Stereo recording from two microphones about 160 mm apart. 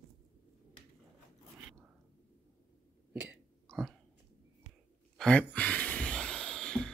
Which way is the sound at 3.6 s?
5° left (ahead or behind).